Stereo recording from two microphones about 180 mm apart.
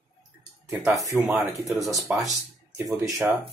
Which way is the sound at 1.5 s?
Centre (ahead or behind).